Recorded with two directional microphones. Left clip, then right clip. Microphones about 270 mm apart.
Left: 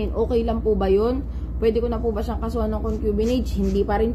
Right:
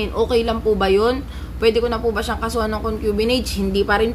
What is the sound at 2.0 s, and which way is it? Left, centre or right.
Speech, right.